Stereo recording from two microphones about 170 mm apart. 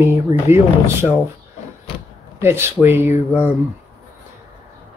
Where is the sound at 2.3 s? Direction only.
15° right (ahead or behind).